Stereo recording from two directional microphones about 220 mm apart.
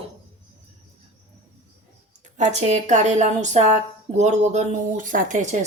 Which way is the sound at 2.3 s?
30° right (ahead or behind).